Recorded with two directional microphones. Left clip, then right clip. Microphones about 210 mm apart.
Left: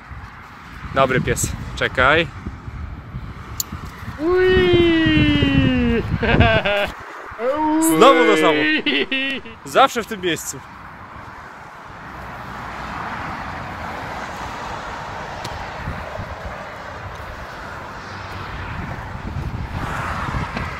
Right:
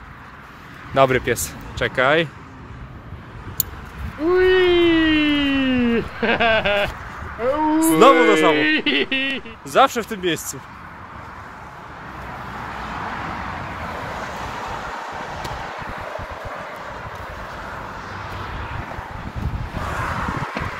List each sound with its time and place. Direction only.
0.9 s speech: 15° right (ahead or behind)
4.3 s a sound: centre (ahead or behind)
7.3 s speech: centre (ahead or behind)
12.7 s vehicle: 35° left (ahead or behind)
14.5 s vehicle: 25° right (ahead or behind); by 16.7 s centre (ahead or behind)
18.0 s vehicle: 20° right (ahead or behind)
20.3 s a sound: 10° right (ahead or behind)